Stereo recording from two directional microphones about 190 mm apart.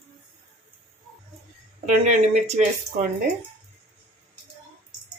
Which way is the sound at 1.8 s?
35° right (ahead or behind).